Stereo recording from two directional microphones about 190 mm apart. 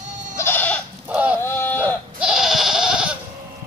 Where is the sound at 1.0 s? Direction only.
10° right (ahead or behind).